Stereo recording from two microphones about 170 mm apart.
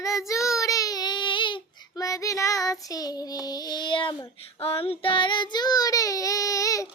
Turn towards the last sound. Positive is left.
turn(degrees=20)  # may be behind; listen again after turning